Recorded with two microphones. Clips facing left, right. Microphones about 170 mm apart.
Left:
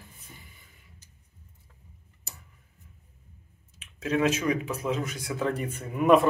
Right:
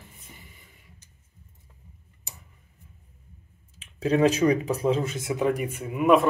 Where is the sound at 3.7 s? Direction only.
35° right (ahead or behind); by 6.2 s centre (ahead or behind).